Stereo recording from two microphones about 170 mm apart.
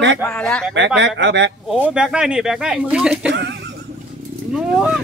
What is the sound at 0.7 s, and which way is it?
Speech, 90° right.